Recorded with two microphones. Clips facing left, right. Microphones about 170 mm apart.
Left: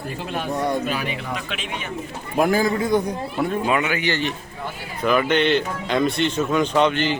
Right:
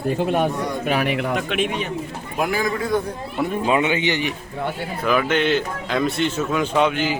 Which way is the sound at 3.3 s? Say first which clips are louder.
Right 1 dB; centre (ahead or behind).